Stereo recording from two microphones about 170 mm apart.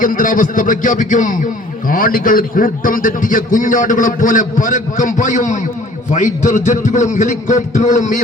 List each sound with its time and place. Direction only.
0.0 s a man's voice: 55° left (ahead or behind)